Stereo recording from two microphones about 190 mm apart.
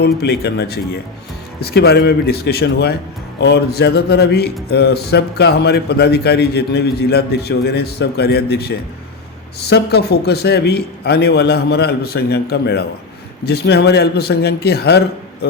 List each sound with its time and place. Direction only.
0.0 s a man's voice: 60° left (ahead or behind)